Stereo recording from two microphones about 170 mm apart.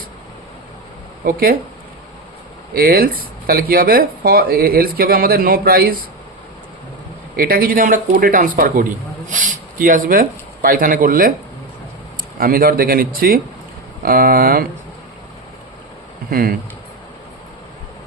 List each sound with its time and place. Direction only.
1.2 s speech: 60° right (ahead or behind)
2.7 s speech: 60° right (ahead or behind)
7.3 s speech: 60° right (ahead or behind)
12.4 s speech: 55° right (ahead or behind)
16.3 s speech: 60° right (ahead or behind)